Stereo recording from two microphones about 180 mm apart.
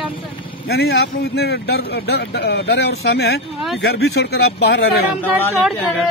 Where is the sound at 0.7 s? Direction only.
65° left (ahead or behind).